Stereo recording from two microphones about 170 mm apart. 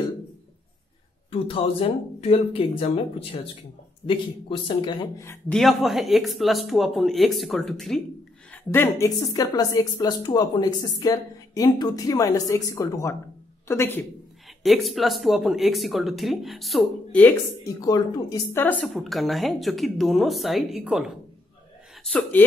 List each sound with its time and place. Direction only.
1.3 s speech: 35° left (ahead or behind)
5.1 s speech: 15° left (ahead or behind)
5.5 s speech: centre (ahead or behind)
8.5 s a woman's voice: 15° left (ahead or behind)
14.6 s speech: centre (ahead or behind)
17.7 s a woman's voice: 20° left (ahead or behind)
18.6 s speech: 10° left (ahead or behind)
22.0 s speech: 10° left (ahead or behind)